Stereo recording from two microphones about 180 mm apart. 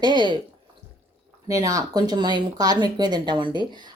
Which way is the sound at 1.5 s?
20° right (ahead or behind).